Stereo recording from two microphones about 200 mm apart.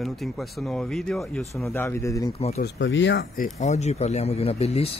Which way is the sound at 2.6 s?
65° left (ahead or behind).